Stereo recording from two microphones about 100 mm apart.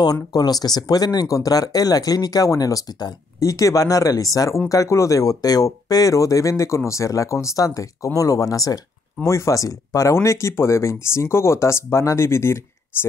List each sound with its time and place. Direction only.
0.0 s speech: 40° left (ahead or behind)